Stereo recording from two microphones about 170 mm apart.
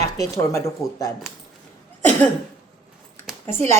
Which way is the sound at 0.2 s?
20° left (ahead or behind).